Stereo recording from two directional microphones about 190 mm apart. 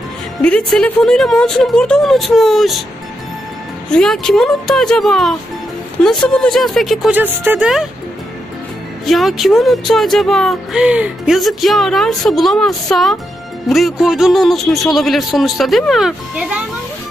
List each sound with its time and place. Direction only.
0.4 s speech: 5° left (ahead or behind)
3.9 s speech: 5° left (ahead or behind)
9.0 s speech: centre (ahead or behind)